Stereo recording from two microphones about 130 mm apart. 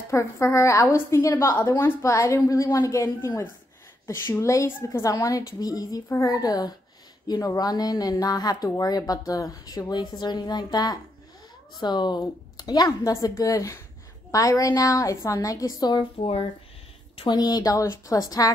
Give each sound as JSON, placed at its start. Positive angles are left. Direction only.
{"t": 0.1, "sound": "speech", "side_deg": 20}
{"t": 16.2, "sound": "speech", "side_deg": 45}
{"t": 17.2, "sound": "speech", "side_deg": 30}